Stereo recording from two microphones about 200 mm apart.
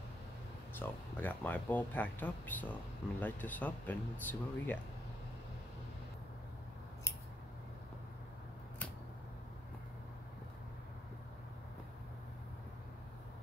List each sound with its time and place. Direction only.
0.7 s speech: 10° left (ahead or behind)